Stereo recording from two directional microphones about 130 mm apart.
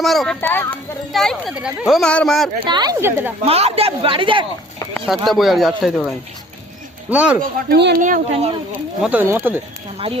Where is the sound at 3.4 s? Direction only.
50° right (ahead or behind).